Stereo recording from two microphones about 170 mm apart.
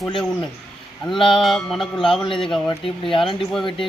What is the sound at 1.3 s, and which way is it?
Speech, centre (ahead or behind).